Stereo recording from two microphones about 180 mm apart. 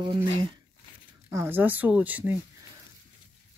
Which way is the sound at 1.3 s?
15° right (ahead or behind).